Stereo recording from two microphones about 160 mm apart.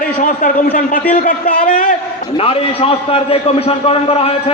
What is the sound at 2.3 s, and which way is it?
A man's voice, 35° left (ahead or behind).